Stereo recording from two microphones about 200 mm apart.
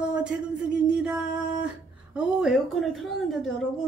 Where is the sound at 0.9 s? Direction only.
5° right (ahead or behind).